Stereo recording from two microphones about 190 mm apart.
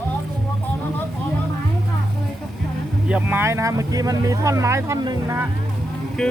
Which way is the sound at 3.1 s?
10° right (ahead or behind).